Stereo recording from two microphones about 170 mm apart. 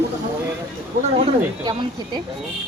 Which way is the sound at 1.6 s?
25° right (ahead or behind).